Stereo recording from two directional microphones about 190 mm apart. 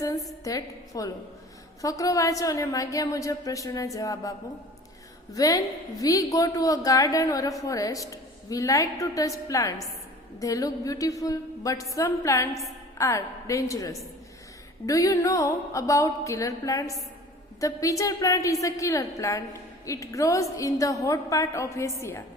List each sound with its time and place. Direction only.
0.4 s a woman's voice: 20° left (ahead or behind)